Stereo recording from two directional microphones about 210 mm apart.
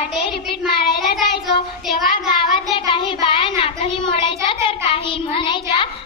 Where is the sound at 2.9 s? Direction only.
25° left (ahead or behind).